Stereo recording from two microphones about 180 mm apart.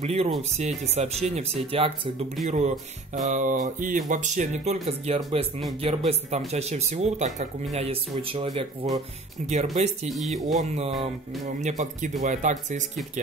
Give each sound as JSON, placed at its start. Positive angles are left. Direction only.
{"t": 0.0, "sound": "speech", "side_deg": -35}
{"t": 9.4, "sound": "speech", "side_deg": -40}
{"t": 10.0, "sound": "speech", "side_deg": 0}
{"t": 10.6, "sound": "speech", "side_deg": -35}